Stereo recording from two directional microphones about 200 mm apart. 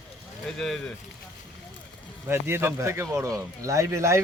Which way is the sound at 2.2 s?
10° right (ahead or behind).